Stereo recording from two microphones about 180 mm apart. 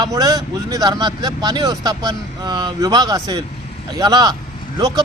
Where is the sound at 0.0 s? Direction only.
20° right (ahead or behind).